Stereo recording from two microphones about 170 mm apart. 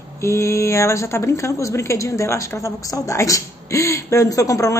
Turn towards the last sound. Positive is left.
turn(degrees=20)  # may be behind; listen again after turning